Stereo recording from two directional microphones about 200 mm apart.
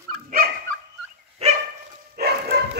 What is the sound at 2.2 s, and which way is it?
Bow-wow, 50° right (ahead or behind).